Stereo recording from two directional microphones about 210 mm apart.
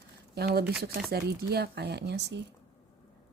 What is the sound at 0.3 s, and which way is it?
Speech, 50° right (ahead or behind).